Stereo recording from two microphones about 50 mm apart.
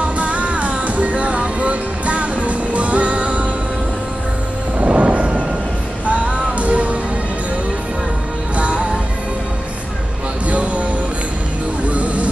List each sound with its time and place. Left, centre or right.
0.2 s music: right
4.7 s music: right
8.5 s music: right
10.4 s music: right